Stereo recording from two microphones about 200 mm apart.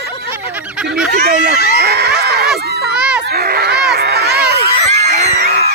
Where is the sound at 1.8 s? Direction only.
55° right (ahead or behind).